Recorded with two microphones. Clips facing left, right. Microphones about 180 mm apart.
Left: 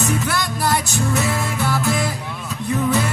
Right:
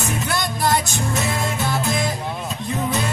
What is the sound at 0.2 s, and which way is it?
Music, 20° right (ahead or behind).